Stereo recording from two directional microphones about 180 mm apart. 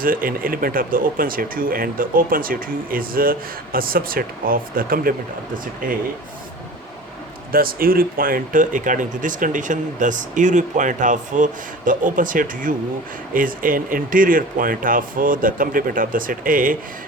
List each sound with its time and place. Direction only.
0.0 s speech: 50° right (ahead or behind)
7.5 s speech: 55° right (ahead or behind)